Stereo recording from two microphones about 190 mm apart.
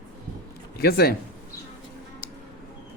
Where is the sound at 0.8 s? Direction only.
55° left (ahead or behind).